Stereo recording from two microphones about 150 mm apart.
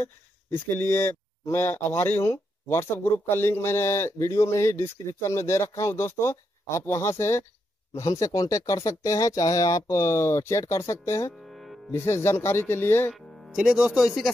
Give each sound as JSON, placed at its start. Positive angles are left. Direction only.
{"t": 0.5, "sound": "speech", "side_deg": 15}
{"t": 11.3, "sound": "music", "side_deg": 0}
{"t": 11.9, "sound": "speech", "side_deg": 15}
{"t": 13.1, "sound": "speech", "side_deg": 0}